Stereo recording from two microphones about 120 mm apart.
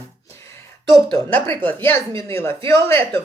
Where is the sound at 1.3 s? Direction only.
15° left (ahead or behind).